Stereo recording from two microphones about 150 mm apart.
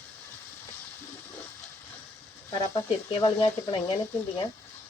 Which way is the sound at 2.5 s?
30° left (ahead or behind).